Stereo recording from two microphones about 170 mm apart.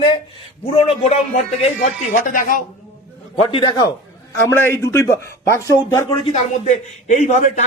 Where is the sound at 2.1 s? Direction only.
50° left (ahead or behind).